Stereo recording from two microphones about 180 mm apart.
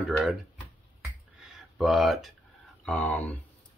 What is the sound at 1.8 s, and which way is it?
Speech, centre (ahead or behind).